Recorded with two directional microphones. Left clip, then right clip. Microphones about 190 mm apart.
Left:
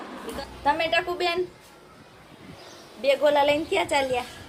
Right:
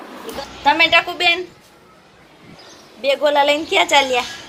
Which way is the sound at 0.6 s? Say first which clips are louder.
Right 10 dB; 5° right (ahead or behind).